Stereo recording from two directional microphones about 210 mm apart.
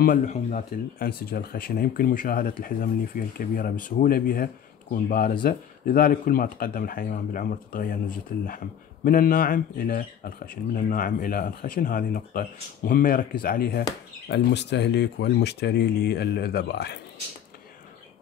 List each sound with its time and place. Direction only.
0.0 s speech: 40° left (ahead or behind)